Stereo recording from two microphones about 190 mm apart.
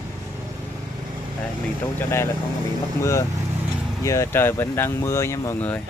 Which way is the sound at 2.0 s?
15° left (ahead or behind).